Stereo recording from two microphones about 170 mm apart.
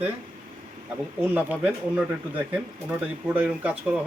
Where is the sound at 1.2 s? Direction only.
10° right (ahead or behind).